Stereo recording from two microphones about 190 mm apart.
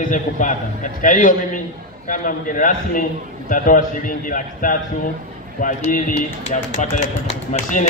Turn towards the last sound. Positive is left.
turn(degrees=40)  # may be behind; listen again after turning